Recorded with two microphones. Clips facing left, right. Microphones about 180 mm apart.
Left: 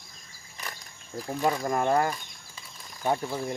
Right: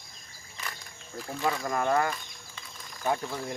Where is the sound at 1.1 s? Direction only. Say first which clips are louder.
Left 3 dB; 25° left (ahead or behind).